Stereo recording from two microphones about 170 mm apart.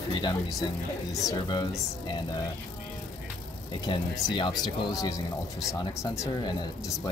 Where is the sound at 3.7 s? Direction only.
30° left (ahead or behind).